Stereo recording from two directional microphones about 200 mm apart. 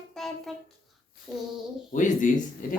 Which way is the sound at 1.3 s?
Centre (ahead or behind).